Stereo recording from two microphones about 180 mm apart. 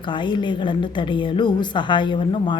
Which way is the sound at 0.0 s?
25° left (ahead or behind).